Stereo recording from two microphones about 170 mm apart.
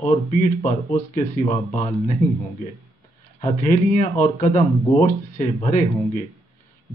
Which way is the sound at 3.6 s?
45° left (ahead or behind).